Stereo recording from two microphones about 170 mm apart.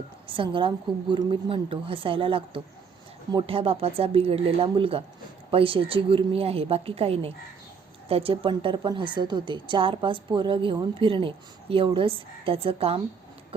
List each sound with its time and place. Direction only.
0.3 s a woman's voice: 30° right (ahead or behind)